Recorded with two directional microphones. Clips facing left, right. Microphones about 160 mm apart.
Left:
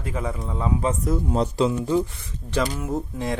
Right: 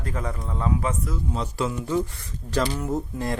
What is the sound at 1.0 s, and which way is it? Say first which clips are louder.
Speech: left 7 dB; 45° left (ahead or behind).